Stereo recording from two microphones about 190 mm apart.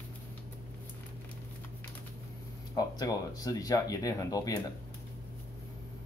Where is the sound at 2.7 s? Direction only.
20° left (ahead or behind).